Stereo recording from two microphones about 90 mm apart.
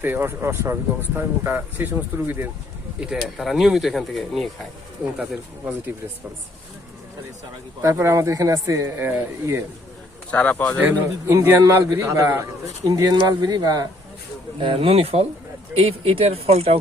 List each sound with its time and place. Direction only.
0.0 s speech: 25° right (ahead or behind)
3.0 s speech: 5° right (ahead or behind)
5.1 s speech: 10° right (ahead or behind)
7.8 s speech: 35° right (ahead or behind)
9.0 s speech: 25° right (ahead or behind)
10.3 s speech: 15° left (ahead or behind)
11.3 s speech: 35° right (ahead or behind)
14.6 s speech: 85° right